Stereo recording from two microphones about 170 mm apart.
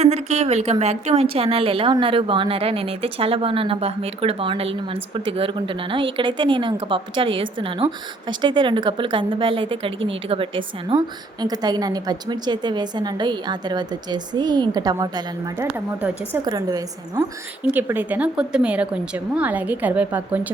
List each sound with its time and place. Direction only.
0.0 s a woman's voice: 40° right (ahead or behind); by 15.6 s 20° right (ahead or behind)
16.0 s speech: 10° right (ahead or behind)
16.4 s a woman's voice: 20° right (ahead or behind)